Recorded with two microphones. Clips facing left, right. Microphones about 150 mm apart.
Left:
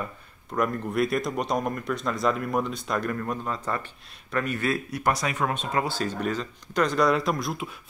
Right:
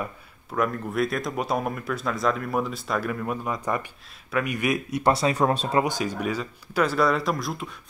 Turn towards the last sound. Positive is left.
turn(degrees=0)  # may be behind; listen again after turning